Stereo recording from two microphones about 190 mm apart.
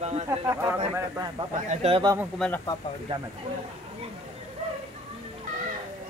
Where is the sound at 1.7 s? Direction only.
30° right (ahead or behind).